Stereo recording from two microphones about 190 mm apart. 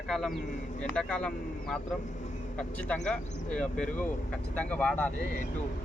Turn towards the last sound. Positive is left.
turn(degrees=5)  # may be behind; listen again after turning